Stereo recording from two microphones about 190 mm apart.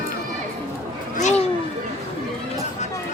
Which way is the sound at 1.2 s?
40° left (ahead or behind).